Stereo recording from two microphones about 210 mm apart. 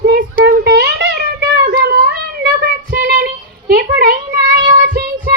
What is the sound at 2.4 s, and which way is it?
Child singing, 45° right (ahead or behind).